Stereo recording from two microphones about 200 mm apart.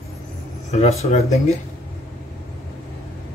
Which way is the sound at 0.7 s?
30° left (ahead or behind).